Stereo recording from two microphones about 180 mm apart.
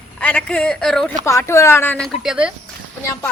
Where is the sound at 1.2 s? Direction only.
15° left (ahead or behind).